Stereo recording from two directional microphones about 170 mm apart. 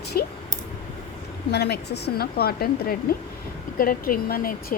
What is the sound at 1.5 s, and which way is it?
Speech, 75° left (ahead or behind).